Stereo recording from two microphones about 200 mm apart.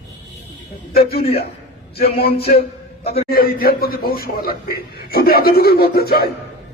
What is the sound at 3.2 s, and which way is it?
Speech, 50° left (ahead or behind).